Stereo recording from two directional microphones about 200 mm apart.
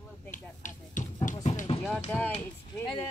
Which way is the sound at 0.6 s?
40° left (ahead or behind).